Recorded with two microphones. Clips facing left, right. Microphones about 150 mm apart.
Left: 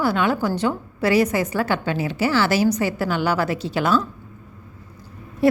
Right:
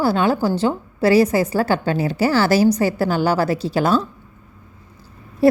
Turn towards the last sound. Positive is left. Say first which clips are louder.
# right 3 dB
turn(degrees=-35)  # may be behind; listen again after turning